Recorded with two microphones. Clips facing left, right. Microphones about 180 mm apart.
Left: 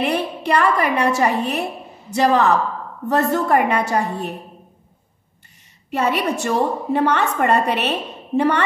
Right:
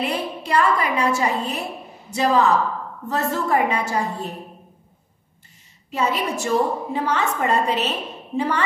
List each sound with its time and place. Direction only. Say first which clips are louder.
0.0 s a woman's voice: left 4 dB; 65° left (ahead or behind)
5.9 s a woman's voice: left 3 dB; 65° left (ahead or behind)